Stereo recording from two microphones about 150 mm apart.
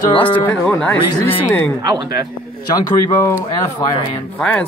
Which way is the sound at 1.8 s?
30° right (ahead or behind).